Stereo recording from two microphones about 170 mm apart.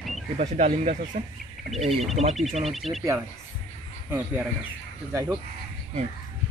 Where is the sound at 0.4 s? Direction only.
45° right (ahead or behind).